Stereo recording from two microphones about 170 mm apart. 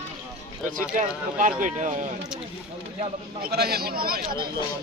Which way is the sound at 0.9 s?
50° right (ahead or behind).